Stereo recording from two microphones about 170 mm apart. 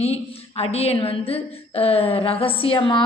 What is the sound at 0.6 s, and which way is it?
A woman's voice, 35° left (ahead or behind).